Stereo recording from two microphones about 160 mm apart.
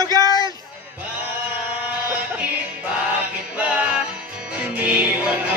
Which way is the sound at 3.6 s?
10° right (ahead or behind).